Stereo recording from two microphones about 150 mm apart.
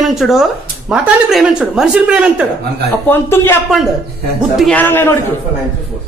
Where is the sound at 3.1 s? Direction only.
15° left (ahead or behind).